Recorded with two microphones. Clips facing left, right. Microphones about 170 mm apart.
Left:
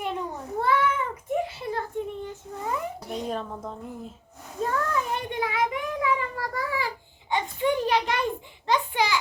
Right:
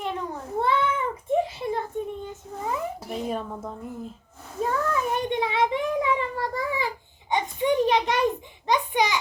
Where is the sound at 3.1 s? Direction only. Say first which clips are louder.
Even; 5° right (ahead or behind).